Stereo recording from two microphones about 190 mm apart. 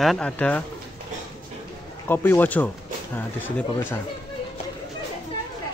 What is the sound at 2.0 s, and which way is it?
Speech, 10° left (ahead or behind).